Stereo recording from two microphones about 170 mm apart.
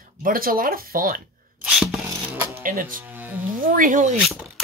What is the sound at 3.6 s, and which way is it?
Speech, 50° right (ahead or behind).